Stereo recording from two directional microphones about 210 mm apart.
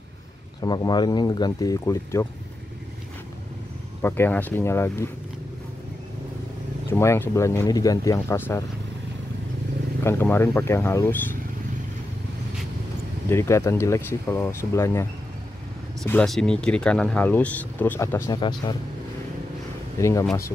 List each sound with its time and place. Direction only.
0.6 s speech: 20° left (ahead or behind)
4.0 s speech: 10° left (ahead or behind)
6.9 s speech: 10° left (ahead or behind)
10.0 s speech: 10° left (ahead or behind)
13.3 s speech: 15° left (ahead or behind)
20.0 s speech: 15° left (ahead or behind)